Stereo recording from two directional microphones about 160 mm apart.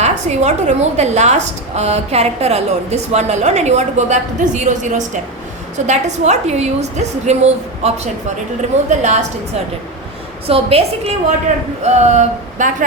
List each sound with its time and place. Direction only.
0.0 s a woman's voice: 45° right (ahead or behind)
10.4 s a woman's voice: 35° right (ahead or behind)